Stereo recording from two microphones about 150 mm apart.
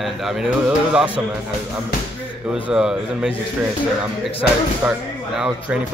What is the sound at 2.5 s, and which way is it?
Speech, 5° right (ahead or behind).